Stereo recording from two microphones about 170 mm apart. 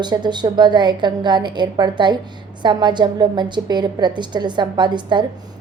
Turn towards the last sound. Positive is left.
turn(degrees=-25)  # may be behind; listen again after turning